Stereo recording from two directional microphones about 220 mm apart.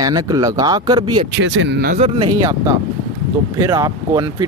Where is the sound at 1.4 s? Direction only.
60° right (ahead or behind).